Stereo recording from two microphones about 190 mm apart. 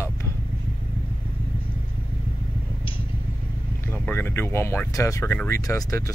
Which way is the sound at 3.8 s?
10° left (ahead or behind).